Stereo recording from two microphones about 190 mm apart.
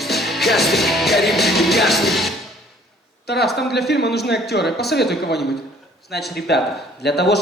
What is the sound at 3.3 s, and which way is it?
A man's voice, 60° left (ahead or behind).